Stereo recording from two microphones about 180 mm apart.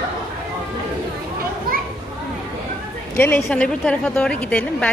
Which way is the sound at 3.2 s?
10° left (ahead or behind).